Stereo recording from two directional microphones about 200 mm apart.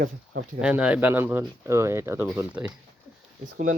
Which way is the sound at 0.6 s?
5° right (ahead or behind).